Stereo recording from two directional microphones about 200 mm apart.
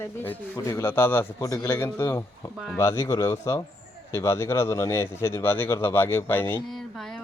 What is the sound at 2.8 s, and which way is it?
Speech, 15° left (ahead or behind).